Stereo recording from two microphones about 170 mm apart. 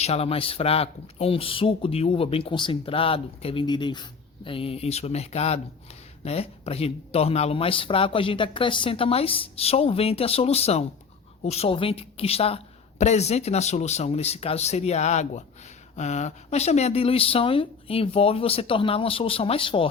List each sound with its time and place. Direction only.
0.0 s speech: 35° left (ahead or behind)